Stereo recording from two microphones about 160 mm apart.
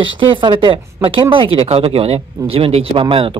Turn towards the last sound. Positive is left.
turn(degrees=-30)  # may be behind; listen again after turning